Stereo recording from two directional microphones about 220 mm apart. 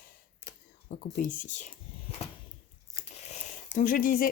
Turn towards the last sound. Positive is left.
turn(degrees=40)  # may be behind; listen again after turning